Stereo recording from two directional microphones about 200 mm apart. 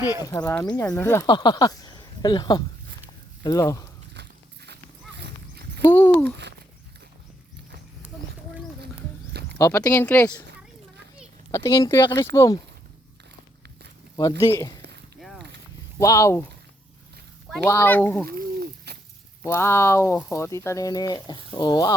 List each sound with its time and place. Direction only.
0.2 s speech: 20° left (ahead or behind)
0.7 s speech: 10° left (ahead or behind)
1.3 s speech: 20° left (ahead or behind)
4.1 s walk: 55° right (ahead or behind)
5.2 s a sound: 55° right (ahead or behind)
5.9 s a sound: 10° left (ahead or behind)
9.6 s speech: 15° left (ahead or behind)
11.5 s speech: 15° left (ahead or behind)
14.2 s speech: 15° left (ahead or behind)
15.2 s a sound: centre (ahead or behind)
16.0 s speech: 15° left (ahead or behind)
17.7 s speech: 10° left (ahead or behind)
18.3 s a sound: 50° right (ahead or behind)
19.5 s speech: 15° left (ahead or behind)